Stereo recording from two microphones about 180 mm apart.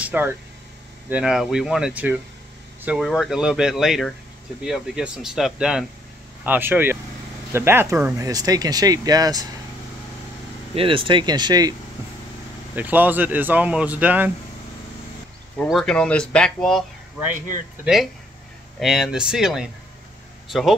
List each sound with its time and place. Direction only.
0.0 s vehicle: 10° right (ahead or behind)
1.0 s speech: 5° right (ahead or behind); by 9.5 s 20° right (ahead or behind)
10.7 s speech: 30° right (ahead or behind)
12.7 s speech: 10° right (ahead or behind)
15.5 s speech: 5° left (ahead or behind)
18.8 s speech: centre (ahead or behind)